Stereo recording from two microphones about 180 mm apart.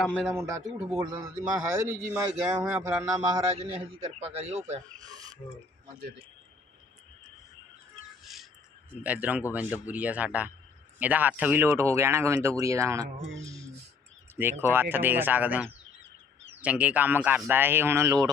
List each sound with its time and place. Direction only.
0.2 s speech: 10° right (ahead or behind); by 4.8 s 35° right (ahead or behind)
4.9 s speech: 20° right (ahead or behind)
8.2 s a sound: centre (ahead or behind)
9.0 s speech: 10° right (ahead or behind)